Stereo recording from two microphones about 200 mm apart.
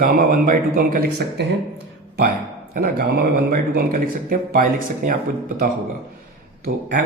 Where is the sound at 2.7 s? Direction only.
45° right (ahead or behind).